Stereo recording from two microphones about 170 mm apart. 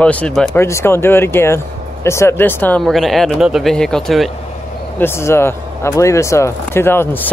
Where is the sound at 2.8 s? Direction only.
Centre (ahead or behind).